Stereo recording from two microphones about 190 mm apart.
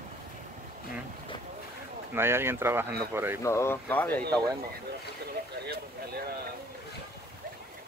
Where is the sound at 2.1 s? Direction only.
10° right (ahead or behind).